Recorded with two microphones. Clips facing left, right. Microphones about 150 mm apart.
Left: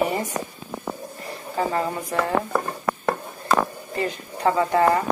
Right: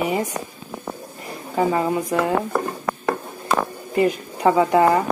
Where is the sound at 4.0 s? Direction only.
15° right (ahead or behind).